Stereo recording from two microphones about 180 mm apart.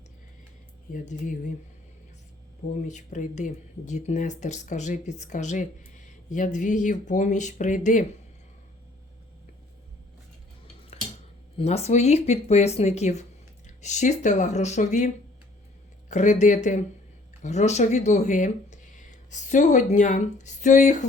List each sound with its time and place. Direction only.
0.9 s speech: 45° left (ahead or behind)
2.7 s speech: 40° left (ahead or behind)
11.5 s speech: 35° left (ahead or behind)